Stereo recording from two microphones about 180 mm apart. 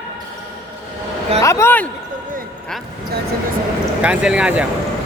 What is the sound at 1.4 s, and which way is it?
Speech, 10° left (ahead or behind).